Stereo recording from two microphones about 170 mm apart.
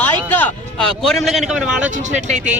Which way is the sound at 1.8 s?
45° right (ahead or behind).